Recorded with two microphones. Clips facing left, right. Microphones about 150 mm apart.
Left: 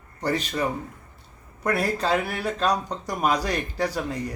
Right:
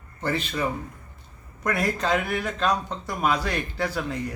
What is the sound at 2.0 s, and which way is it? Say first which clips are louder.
Speech: left 1 dB; 10° left (ahead or behind).